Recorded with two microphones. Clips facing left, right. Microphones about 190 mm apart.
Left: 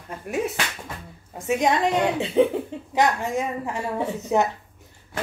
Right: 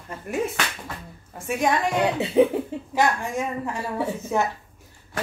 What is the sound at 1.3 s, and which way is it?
Speech, 20° left (ahead or behind).